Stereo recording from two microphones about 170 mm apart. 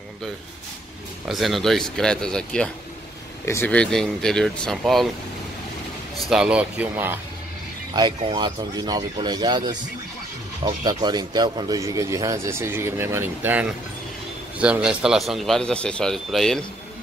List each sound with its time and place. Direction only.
1.2 s a man's voice: centre (ahead or behind)
6.3 s speech: 5° right (ahead or behind)
7.9 s a man's voice: 25° right (ahead or behind); by 16.6 s centre (ahead or behind)